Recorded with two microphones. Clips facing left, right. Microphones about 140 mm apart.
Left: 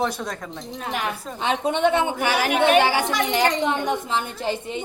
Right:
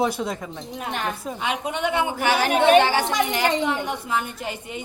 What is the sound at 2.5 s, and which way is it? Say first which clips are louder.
Speech: right 2 dB; 35° right (ahead or behind).